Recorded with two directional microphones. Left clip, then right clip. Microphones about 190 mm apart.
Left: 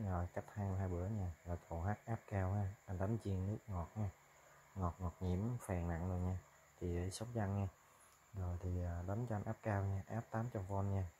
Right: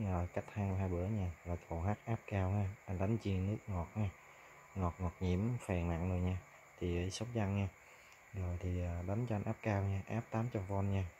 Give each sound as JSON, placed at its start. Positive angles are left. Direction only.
{"t": 0.1, "sound": "speech", "side_deg": -15}
{"t": 8.8, "sound": "speech", "side_deg": -10}